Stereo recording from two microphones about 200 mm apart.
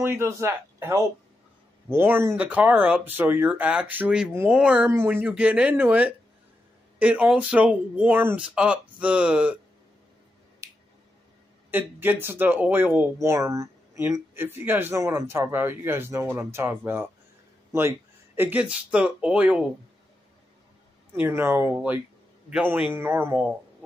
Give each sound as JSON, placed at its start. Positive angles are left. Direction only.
{"t": 0.0, "sound": "speech", "side_deg": -10}
{"t": 10.6, "sound": "finger snapping", "side_deg": -15}
{"t": 11.7, "sound": "speech", "side_deg": -10}
{"t": 21.2, "sound": "speech", "side_deg": -10}